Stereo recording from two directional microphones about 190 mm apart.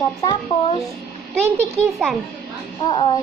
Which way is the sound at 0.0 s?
15° left (ahead or behind).